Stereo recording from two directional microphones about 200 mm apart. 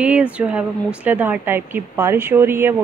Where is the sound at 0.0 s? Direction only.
5° right (ahead or behind).